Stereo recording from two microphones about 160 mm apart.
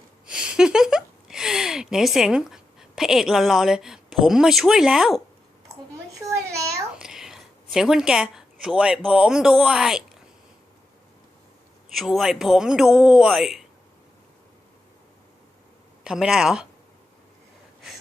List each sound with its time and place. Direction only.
0.3 s speech: 5° right (ahead or behind)
6.1 s a sound: 20° right (ahead or behind)
7.0 s a sound: 5° right (ahead or behind)
9.0 s speech: 5° right (ahead or behind)
11.9 s speech: centre (ahead or behind)
16.0 s speech: 5° right (ahead or behind)